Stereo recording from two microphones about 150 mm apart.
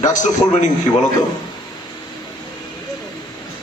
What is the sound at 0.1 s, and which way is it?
Speech, 55° left (ahead or behind).